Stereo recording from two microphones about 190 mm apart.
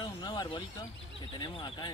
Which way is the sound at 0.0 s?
20° left (ahead or behind).